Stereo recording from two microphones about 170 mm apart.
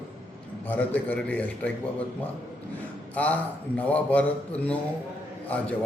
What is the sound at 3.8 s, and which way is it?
A woman's voice, 10° left (ahead or behind).